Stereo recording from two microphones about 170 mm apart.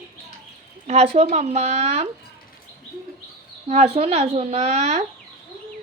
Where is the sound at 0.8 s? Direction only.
35° right (ahead or behind).